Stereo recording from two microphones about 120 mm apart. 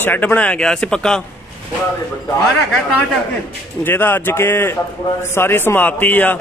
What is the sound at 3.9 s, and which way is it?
A man's voice, 15° left (ahead or behind).